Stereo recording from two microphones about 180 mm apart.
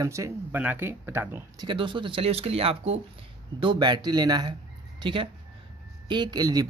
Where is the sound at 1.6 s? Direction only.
25° right (ahead or behind).